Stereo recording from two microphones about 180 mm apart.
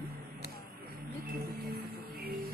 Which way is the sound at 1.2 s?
60° right (ahead or behind).